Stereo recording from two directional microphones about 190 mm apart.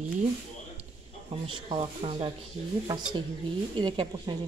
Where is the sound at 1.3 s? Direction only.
25° right (ahead or behind).